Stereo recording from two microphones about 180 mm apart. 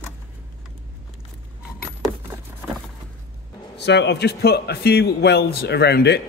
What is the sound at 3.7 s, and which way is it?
A man's voice, 75° left (ahead or behind).